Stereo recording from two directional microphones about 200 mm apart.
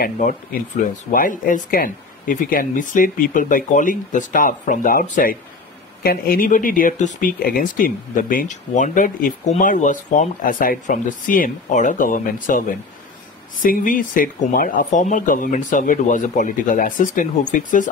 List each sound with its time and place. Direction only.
0.0 s speech: 45° left (ahead or behind)